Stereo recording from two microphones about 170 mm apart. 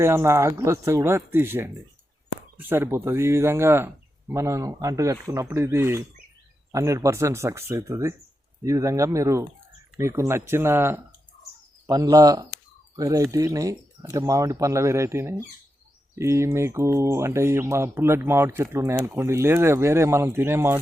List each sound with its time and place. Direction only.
0.0 s speech: 15° right (ahead or behind)